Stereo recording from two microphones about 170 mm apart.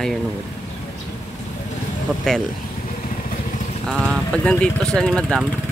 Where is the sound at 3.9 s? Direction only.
5° left (ahead or behind).